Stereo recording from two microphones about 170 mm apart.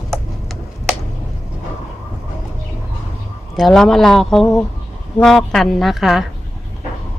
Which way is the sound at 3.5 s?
Centre (ahead or behind).